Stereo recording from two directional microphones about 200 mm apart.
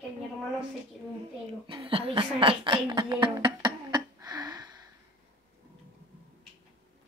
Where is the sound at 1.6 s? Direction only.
25° right (ahead or behind).